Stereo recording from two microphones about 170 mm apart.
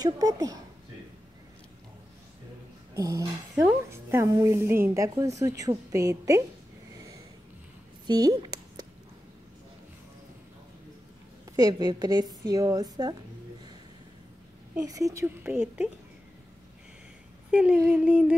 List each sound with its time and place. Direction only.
0.0 s a woman's voice: 20° right (ahead or behind)
2.9 s dog: 20° right (ahead or behind)
3.6 s a woman's voice: 15° right (ahead or behind)
8.1 s a sound: 25° right (ahead or behind)
11.5 s a woman's voice: 25° right (ahead or behind)
14.8 s a woman's voice: 20° right (ahead or behind)
17.5 s speech: 5° right (ahead or behind)
17.7 s a woman's voice: 15° right (ahead or behind)
18.0 s a sound: 5° right (ahead or behind)